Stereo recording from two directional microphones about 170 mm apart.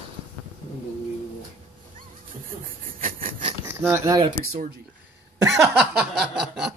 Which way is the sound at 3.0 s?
55° right (ahead or behind).